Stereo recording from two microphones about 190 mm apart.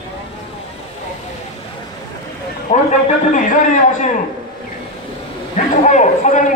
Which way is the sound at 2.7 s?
50° left (ahead or behind).